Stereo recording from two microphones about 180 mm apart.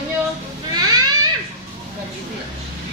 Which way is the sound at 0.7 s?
20° right (ahead or behind).